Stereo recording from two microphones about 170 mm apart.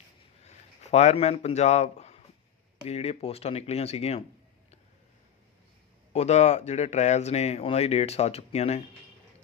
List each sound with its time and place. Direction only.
0.8 s speech: 40° left (ahead or behind)
6.1 s speech: 40° left (ahead or behind)